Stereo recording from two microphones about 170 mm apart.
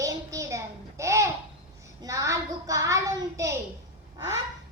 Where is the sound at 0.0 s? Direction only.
20° right (ahead or behind).